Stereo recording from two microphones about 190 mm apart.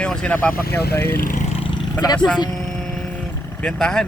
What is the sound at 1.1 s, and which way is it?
Speech, 45° left (ahead or behind).